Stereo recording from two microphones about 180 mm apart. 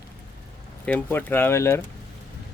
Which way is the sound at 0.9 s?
10° left (ahead or behind).